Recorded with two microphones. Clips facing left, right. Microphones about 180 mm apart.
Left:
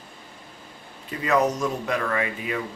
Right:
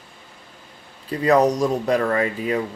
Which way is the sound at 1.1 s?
35° right (ahead or behind).